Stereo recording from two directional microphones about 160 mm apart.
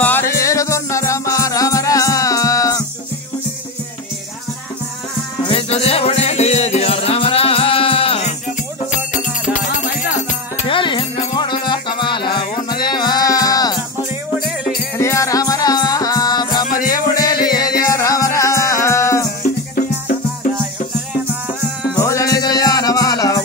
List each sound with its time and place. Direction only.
0.0 s music: 15° left (ahead or behind)
5.5 s music: 35° left (ahead or behind)
10.7 s music: 30° left (ahead or behind)
15.0 s music: 20° left (ahead or behind)
16.6 s music: 60° left (ahead or behind)
17.1 s music: 25° left (ahead or behind)
21.9 s music: 20° left (ahead or behind)